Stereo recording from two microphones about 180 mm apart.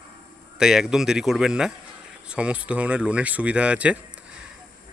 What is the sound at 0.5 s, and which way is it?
Speech, centre (ahead or behind).